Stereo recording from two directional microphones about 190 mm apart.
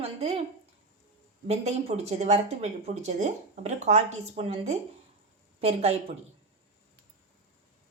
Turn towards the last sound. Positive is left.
turn(degrees=-35)  # may be behind; listen again after turning